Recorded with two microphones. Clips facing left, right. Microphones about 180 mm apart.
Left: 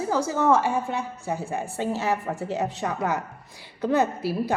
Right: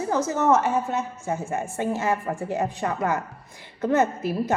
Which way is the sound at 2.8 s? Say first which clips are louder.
Right 1 dB; 15° left (ahead or behind).